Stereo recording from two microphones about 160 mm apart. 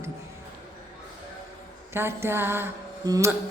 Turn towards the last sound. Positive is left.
turn(degrees=-20)  # may be behind; listen again after turning